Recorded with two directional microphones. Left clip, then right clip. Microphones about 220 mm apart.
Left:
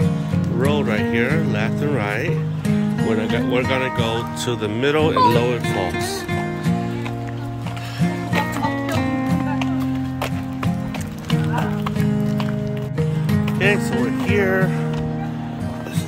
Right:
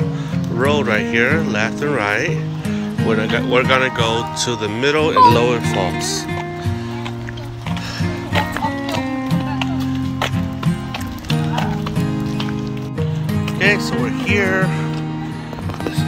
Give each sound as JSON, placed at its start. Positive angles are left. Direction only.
{"t": 0.6, "sound": "speech", "side_deg": 5}
{"t": 8.4, "sound": "music", "side_deg": 0}
{"t": 13.6, "sound": "music", "side_deg": 20}